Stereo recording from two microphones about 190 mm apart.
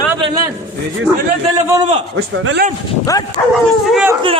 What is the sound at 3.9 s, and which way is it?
Speech, 5° right (ahead or behind).